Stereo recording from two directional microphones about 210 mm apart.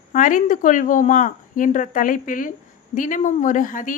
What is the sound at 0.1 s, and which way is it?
A woman's voice, 40° left (ahead or behind).